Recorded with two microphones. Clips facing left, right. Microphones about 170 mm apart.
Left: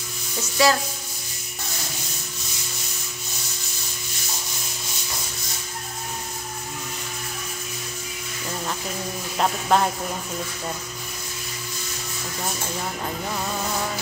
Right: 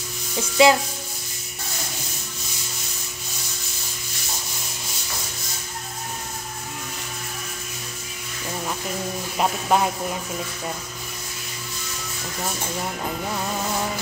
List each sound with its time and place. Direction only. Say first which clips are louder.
0.4 s music: right 4 dB; 20° right (ahead or behind)
9.4 s speech: even; 5° right (ahead or behind)